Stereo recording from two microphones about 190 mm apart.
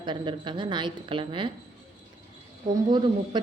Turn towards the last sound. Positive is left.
turn(degrees=-25)  # may be behind; listen again after turning